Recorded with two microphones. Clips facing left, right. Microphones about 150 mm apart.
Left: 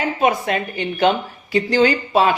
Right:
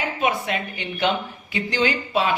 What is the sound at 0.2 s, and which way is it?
Speech, 45° left (ahead or behind).